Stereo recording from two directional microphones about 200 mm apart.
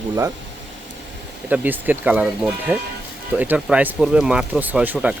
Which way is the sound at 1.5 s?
10° right (ahead or behind).